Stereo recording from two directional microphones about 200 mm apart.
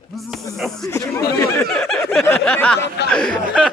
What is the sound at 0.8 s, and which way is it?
Speech, 15° left (ahead or behind).